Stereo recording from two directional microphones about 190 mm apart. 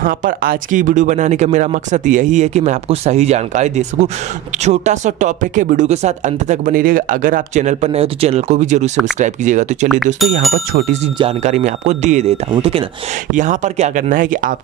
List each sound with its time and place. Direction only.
0.0 s speech: 45° right (ahead or behind)
11.1 s speech: 35° right (ahead or behind)
13.3 s speech: 40° right (ahead or behind)